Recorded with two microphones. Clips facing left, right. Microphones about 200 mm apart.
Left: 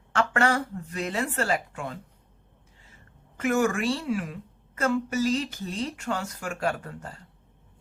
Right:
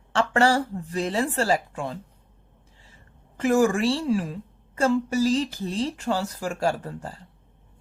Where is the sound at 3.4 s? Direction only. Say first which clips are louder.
Right 4 dB; 30° right (ahead or behind).